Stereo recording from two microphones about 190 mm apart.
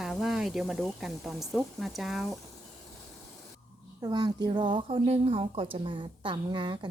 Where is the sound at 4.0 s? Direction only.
20° right (ahead or behind).